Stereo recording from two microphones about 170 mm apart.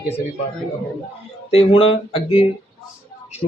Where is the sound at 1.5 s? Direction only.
35° left (ahead or behind).